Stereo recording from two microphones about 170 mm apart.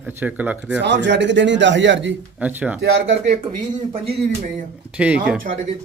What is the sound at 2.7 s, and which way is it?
Speech, 90° right.